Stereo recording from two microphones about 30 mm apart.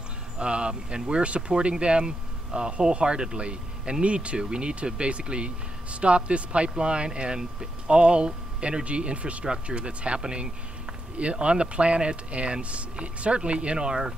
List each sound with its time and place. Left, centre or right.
0.4 s speech: right
4.4 s speech: right